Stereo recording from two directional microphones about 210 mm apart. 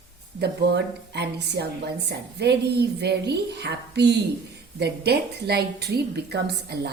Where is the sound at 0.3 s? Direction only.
50° right (ahead or behind).